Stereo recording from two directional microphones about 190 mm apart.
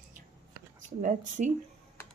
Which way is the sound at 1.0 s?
45° right (ahead or behind).